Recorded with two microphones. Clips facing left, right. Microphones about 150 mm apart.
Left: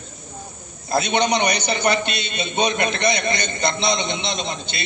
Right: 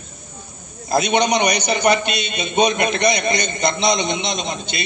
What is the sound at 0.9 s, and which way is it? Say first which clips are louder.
A man's voice: right 2 dB; 20° right (ahead or behind).